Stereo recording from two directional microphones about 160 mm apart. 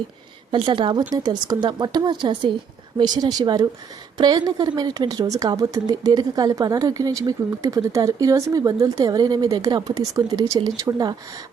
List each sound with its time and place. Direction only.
0.5 s a woman's voice: 30° right (ahead or behind)